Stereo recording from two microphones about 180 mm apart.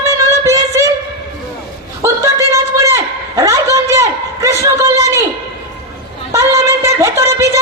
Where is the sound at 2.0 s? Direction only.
15° right (ahead or behind).